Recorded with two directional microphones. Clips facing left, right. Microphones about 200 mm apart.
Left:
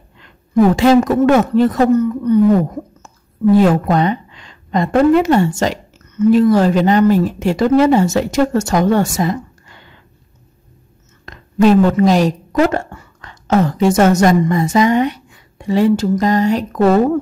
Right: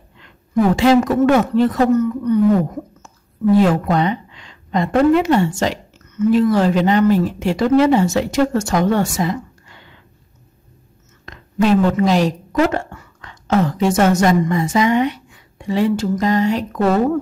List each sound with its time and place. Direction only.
0.7 s speech: 45° left (ahead or behind)
1.9 s a woman's voice: 30° left (ahead or behind)
3.5 s a woman's voice: 45° left (ahead or behind)
11.2 s a woman's voice: 40° left (ahead or behind)